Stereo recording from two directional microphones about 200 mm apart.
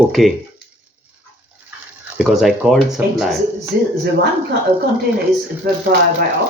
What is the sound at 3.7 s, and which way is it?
Speech, 50° right (ahead or behind).